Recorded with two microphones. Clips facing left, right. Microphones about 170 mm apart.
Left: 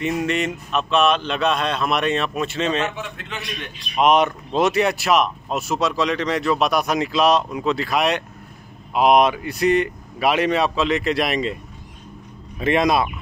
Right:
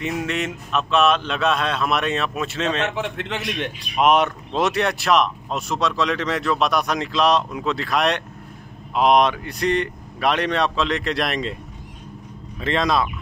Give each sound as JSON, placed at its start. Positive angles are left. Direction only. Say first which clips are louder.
{"t": 0.0, "sound": "speech", "louder": "left 3 dB", "side_deg": 0}
{"t": 2.9, "sound": "a man's voice", "louder": "right 6 dB", "side_deg": -80}
{"t": 3.9, "sound": "speech", "louder": "left 1 dB", "side_deg": 0}
{"t": 12.5, "sound": "speech", "louder": "left 3 dB", "side_deg": 15}